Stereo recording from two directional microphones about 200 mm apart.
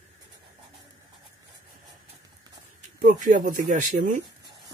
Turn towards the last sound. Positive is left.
turn(degrees=-40)  # may be behind; listen again after turning